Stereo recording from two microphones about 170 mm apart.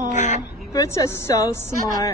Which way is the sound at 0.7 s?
20° left (ahead or behind).